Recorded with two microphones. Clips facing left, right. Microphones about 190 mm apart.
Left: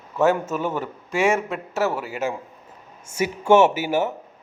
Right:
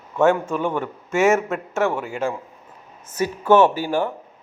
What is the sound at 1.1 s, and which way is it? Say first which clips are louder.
Speech: right 3 dB; 30° left (ahead or behind).